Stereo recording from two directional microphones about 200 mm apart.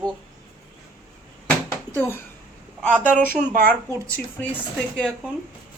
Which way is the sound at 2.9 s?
5° left (ahead or behind).